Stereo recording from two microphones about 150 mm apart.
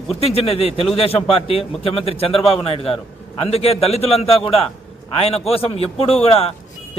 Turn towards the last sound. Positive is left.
turn(degrees=40)  # may be behind; listen again after turning